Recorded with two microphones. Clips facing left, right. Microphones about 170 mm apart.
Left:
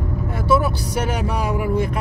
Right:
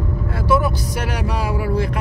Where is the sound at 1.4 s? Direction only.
20° left (ahead or behind).